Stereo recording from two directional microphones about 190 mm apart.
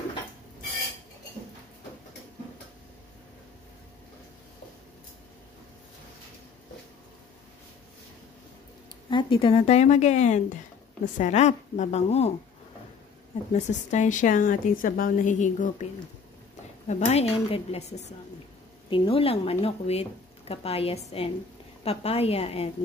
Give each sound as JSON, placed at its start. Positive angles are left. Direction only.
{"t": 9.1, "sound": "speech", "side_deg": 30}
{"t": 13.5, "sound": "a woman's voice", "side_deg": 40}